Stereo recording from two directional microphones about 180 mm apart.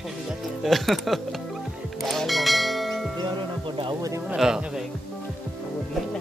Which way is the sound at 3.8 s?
20° right (ahead or behind).